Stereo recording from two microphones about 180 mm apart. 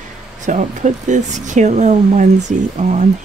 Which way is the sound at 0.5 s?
40° right (ahead or behind).